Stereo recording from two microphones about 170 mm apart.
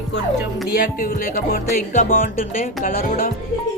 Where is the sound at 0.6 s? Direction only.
55° left (ahead or behind).